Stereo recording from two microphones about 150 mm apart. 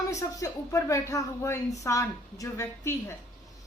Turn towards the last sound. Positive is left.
turn(degrees=20)  # may be behind; listen again after turning